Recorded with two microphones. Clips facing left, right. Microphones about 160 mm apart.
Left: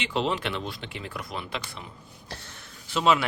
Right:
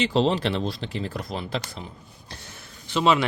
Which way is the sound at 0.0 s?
35° right (ahead or behind).